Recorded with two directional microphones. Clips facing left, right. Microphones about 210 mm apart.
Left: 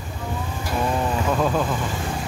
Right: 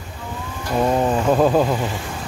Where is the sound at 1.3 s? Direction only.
40° right (ahead or behind).